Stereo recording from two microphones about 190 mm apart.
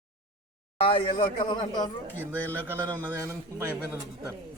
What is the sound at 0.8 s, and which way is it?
A man's voice, 30° left (ahead or behind).